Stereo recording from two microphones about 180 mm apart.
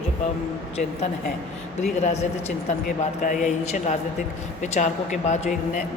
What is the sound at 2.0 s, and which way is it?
A man's voice, 40° left (ahead or behind).